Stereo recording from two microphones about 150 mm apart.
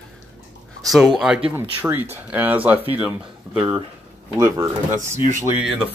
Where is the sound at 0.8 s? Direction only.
Centre (ahead or behind).